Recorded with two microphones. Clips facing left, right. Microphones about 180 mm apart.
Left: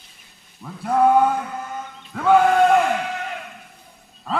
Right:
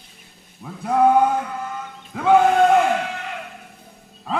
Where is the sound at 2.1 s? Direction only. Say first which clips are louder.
Even; 10° right (ahead or behind).